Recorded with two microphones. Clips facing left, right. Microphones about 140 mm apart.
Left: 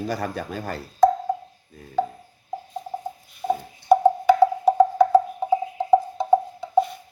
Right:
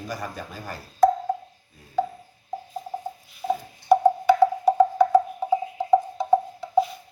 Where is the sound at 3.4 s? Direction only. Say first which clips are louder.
Left 2 dB; 5° left (ahead or behind).